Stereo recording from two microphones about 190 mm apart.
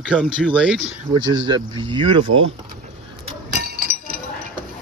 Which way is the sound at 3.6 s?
50° right (ahead or behind).